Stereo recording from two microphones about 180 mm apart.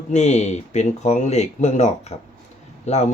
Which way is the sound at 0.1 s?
40° left (ahead or behind).